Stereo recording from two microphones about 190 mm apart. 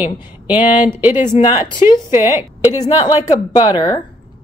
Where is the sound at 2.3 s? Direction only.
10° right (ahead or behind).